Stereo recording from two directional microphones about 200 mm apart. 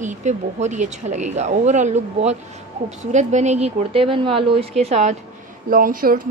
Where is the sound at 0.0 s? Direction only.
35° right (ahead or behind).